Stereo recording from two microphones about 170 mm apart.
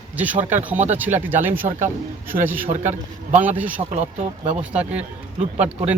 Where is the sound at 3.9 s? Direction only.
40° right (ahead or behind).